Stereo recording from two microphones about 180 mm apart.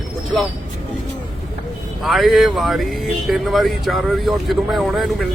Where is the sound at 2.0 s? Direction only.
Centre (ahead or behind).